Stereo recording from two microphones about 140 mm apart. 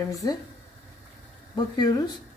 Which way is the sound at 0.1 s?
25° left (ahead or behind).